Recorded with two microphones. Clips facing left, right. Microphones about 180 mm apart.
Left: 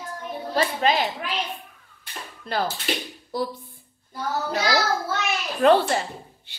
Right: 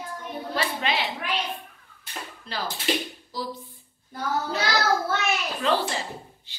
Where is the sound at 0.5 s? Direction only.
40° left (ahead or behind).